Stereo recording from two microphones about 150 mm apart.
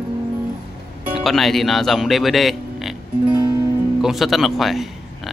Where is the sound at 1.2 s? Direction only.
Centre (ahead or behind).